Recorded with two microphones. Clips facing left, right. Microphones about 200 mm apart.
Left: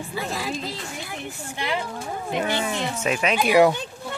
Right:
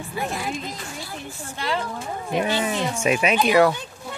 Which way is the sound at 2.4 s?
15° right (ahead or behind).